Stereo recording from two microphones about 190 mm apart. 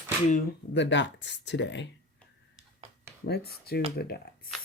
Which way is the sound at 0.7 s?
70° left (ahead or behind).